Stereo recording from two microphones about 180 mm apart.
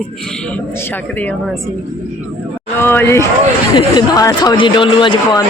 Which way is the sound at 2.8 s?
15° left (ahead or behind).